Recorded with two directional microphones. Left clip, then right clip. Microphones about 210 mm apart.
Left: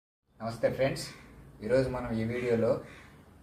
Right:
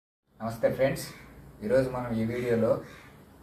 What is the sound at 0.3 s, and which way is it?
A man's voice, 5° left (ahead or behind).